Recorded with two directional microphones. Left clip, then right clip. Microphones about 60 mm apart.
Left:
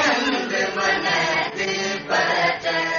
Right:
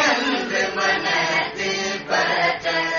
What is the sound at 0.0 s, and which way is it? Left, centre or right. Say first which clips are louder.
Chant: right 1 dB; right.